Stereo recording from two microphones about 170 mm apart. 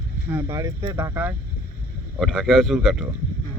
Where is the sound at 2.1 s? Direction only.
5° left (ahead or behind).